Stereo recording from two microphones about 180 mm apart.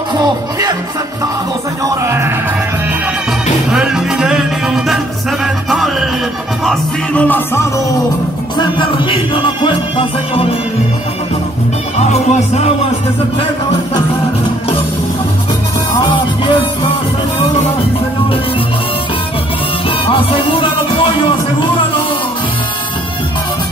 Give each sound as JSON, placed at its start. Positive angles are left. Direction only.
{"t": 2.0, "sound": "music", "side_deg": -15}
{"t": 3.7, "sound": "music", "side_deg": -5}
{"t": 8.5, "sound": "music", "side_deg": 25}
{"t": 12.0, "sound": "music", "side_deg": 40}
{"t": 20.1, "sound": "music", "side_deg": 30}